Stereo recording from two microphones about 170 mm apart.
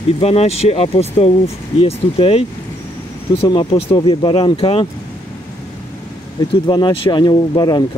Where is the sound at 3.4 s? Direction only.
25° left (ahead or behind).